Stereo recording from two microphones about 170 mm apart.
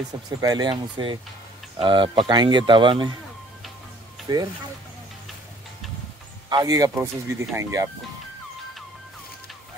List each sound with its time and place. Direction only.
0.1 s speech: 20° right (ahead or behind)
4.3 s speech: 25° right (ahead or behind)
6.5 s speech: 20° right (ahead or behind)